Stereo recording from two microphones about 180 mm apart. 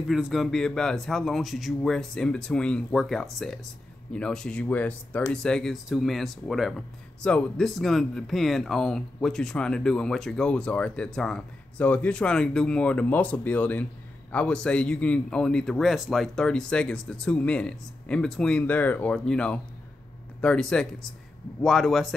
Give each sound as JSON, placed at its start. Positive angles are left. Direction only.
{"t": 0.1, "sound": "speech", "side_deg": 0}